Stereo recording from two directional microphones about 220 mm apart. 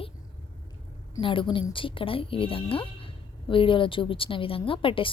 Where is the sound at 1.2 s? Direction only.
25° left (ahead or behind).